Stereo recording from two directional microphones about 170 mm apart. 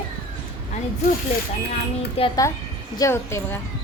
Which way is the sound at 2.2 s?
35° left (ahead or behind).